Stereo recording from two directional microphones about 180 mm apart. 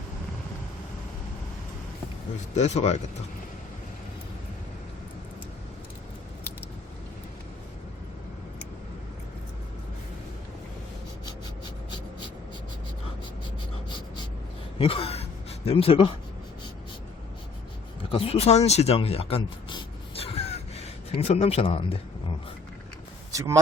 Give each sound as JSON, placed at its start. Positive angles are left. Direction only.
{"t": 2.6, "sound": "speech", "side_deg": 40}
{"t": 14.8, "sound": "gasp", "side_deg": 30}
{"t": 18.1, "sound": "a sound", "side_deg": 30}
{"t": 23.3, "sound": "speech", "side_deg": -15}